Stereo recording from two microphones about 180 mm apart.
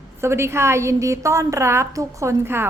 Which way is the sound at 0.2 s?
15° right (ahead or behind).